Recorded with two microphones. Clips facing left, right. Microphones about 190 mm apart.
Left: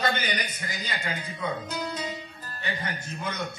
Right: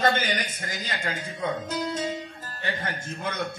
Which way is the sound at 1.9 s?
45° right (ahead or behind).